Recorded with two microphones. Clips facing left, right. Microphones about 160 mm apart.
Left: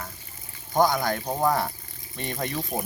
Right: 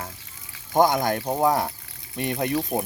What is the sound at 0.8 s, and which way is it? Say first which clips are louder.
Speech: right 3 dB; 20° right (ahead or behind).